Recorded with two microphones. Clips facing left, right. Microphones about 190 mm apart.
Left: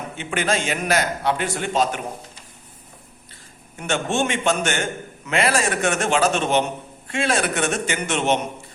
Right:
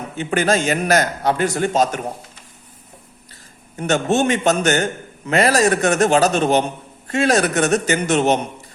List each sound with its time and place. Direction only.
0.2 s a man's voice: 40° right (ahead or behind)
3.8 s a man's voice: 40° right (ahead or behind)